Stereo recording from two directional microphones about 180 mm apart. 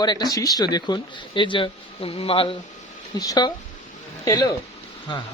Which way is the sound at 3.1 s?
20° left (ahead or behind).